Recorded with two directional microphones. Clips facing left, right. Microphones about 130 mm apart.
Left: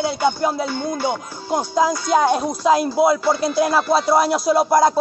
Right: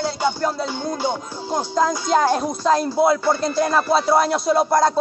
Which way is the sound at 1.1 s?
10° left (ahead or behind).